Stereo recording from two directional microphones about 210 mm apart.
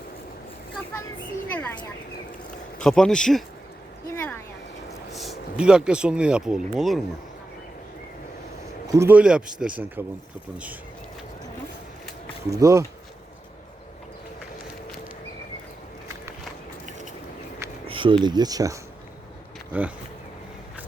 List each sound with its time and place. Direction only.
2.7 s speech: 5° left (ahead or behind)
4.1 s a sound: 10° left (ahead or behind)
5.1 s speech: centre (ahead or behind)
8.9 s speech: 10° right (ahead or behind)
12.5 s speech: 15° right (ahead or behind)
17.8 s speech: 25° right (ahead or behind); by 19.9 s 5° right (ahead or behind)